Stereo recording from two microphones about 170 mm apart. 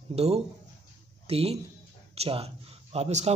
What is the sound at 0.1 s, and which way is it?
A man's voice, 40° right (ahead or behind).